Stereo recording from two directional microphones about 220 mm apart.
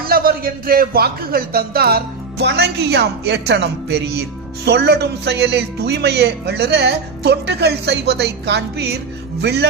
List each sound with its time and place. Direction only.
0.0 s speech: 45° right (ahead or behind)